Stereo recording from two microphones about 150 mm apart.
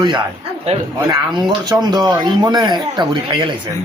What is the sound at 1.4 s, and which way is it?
Speech, 30° right (ahead or behind).